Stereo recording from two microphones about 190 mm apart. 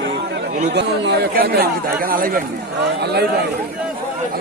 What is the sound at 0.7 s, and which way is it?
Speech, 65° right (ahead or behind).